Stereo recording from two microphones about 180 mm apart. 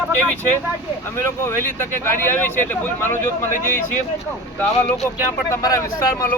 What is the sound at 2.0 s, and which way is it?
Speech, 10° left (ahead or behind).